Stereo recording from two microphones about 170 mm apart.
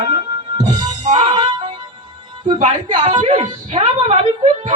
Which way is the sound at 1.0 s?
45° right (ahead or behind).